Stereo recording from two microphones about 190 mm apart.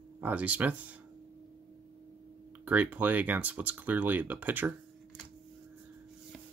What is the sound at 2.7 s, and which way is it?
Speech, 10° right (ahead or behind).